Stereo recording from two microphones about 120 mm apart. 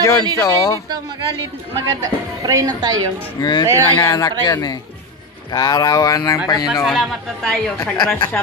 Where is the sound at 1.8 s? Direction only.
30° right (ahead or behind).